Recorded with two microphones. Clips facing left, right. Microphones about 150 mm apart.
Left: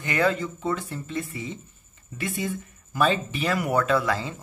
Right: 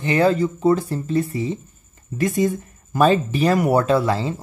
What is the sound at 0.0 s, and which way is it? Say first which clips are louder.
Speech: right 7 dB; 30° right (ahead or behind).